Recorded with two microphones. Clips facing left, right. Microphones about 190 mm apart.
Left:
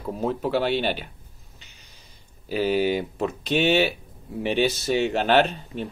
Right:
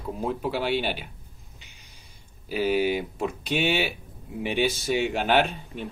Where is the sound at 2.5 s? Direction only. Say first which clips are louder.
Left 2 dB; 10° right (ahead or behind).